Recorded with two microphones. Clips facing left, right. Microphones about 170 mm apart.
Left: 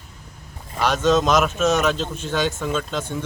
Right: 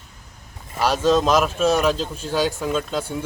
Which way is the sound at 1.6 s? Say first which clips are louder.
Right 2 dB; 35° right (ahead or behind).